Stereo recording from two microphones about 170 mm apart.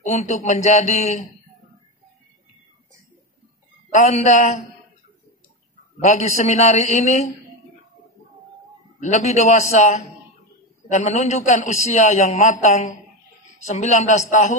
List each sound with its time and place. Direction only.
0.0 s a man's voice: 45° left (ahead or behind)
3.9 s a man's voice: 45° left (ahead or behind)
6.0 s a man's voice: 45° left (ahead or behind)
9.0 s a man's voice: 40° left (ahead or behind)